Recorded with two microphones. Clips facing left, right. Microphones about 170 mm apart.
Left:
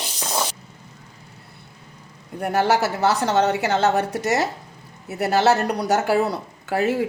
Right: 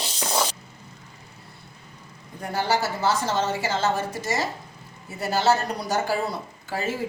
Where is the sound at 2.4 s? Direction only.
70° left (ahead or behind).